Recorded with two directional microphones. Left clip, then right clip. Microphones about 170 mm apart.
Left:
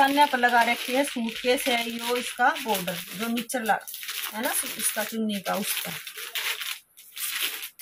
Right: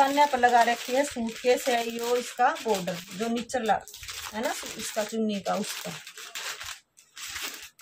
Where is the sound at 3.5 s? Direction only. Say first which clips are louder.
Left 1 dB; 15° right (ahead or behind).